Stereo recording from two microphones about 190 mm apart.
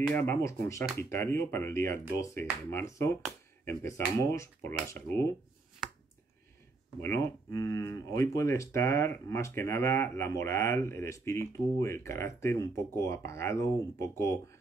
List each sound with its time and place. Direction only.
0.1 s speech: 10° left (ahead or behind)
5.8 s finger snapping: centre (ahead or behind)
7.0 s speech: 15° left (ahead or behind)